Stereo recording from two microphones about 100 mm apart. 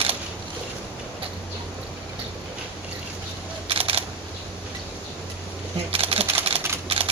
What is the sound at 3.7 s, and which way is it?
Camera, 70° right (ahead or behind).